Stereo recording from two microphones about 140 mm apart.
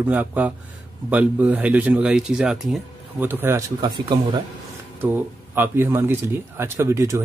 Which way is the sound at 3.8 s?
35° right (ahead or behind).